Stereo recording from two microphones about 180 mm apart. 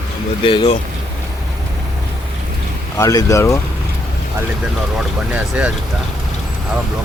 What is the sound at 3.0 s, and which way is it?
Speech, 20° left (ahead or behind).